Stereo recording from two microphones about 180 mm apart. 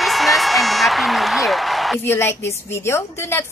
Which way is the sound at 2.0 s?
15° left (ahead or behind).